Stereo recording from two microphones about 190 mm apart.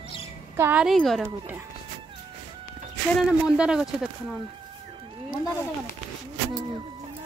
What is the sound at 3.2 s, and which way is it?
A woman's voice, 5° right (ahead or behind).